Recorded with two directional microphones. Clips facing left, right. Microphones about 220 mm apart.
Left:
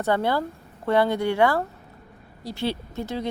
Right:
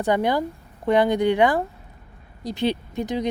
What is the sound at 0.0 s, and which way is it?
A woman's voice, 15° right (ahead or behind).